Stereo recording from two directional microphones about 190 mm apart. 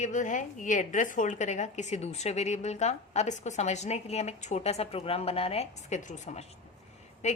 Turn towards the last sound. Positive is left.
turn(degrees=35)  # may be behind; listen again after turning